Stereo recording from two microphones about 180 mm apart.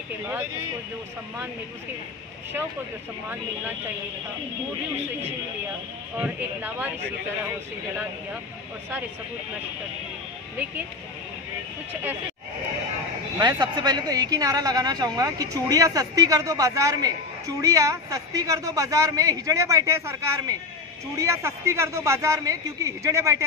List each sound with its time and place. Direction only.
6.2 s a man's voice: 10° right (ahead or behind)
13.4 s a woman's voice: 20° right (ahead or behind)